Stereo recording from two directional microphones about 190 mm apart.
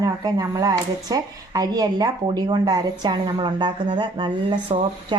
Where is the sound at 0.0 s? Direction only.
20° right (ahead or behind).